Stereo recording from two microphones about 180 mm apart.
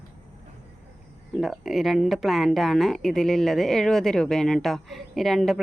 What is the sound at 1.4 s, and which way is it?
A woman's voice, centre (ahead or behind).